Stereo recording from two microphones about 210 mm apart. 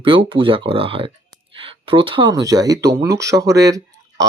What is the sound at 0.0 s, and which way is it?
Speech, 25° right (ahead or behind).